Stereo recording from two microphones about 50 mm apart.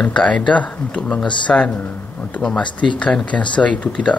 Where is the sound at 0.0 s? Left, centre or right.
Left.